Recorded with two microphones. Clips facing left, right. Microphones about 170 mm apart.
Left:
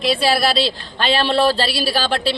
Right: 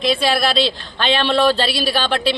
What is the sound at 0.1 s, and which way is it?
Speech, 35° left (ahead or behind).